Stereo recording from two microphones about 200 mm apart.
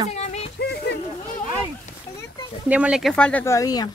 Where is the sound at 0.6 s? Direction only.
55° left (ahead or behind).